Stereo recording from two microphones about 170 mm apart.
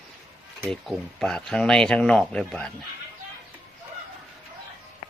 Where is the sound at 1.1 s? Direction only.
5° left (ahead or behind).